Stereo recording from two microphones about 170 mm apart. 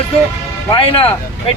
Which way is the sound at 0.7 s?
30° left (ahead or behind).